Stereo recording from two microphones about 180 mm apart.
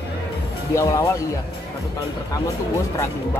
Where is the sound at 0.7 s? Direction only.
15° left (ahead or behind).